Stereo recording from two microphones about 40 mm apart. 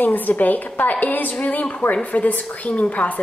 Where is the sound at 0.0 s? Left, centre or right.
Left.